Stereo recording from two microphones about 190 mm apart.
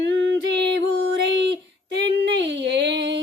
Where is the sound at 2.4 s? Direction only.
60° right (ahead or behind).